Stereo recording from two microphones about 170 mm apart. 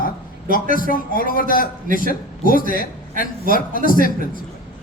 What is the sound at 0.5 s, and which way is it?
A man's voice, 55° left (ahead or behind).